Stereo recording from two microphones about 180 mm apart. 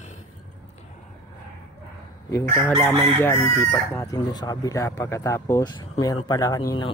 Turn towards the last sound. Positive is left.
turn(degrees=20)  # may be behind; listen again after turning